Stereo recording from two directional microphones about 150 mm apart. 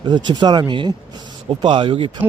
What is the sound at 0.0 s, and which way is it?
A man's voice, 30° right (ahead or behind).